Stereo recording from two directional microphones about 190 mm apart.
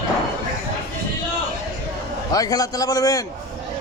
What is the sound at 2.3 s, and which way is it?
Speech, 20° left (ahead or behind).